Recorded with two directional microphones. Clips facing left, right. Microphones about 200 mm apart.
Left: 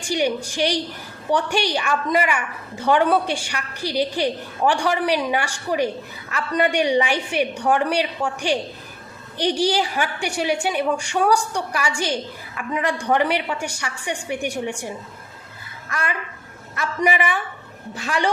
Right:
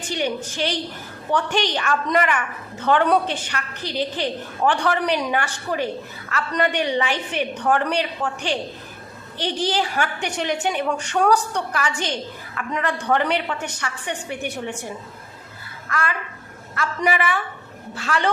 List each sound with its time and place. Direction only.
0.0 s a woman's voice: 10° left (ahead or behind)
15.9 s a woman's voice: 20° left (ahead or behind)